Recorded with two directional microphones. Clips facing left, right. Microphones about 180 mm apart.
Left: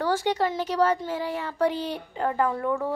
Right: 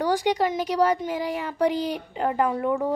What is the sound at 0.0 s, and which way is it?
Speech, 15° right (ahead or behind).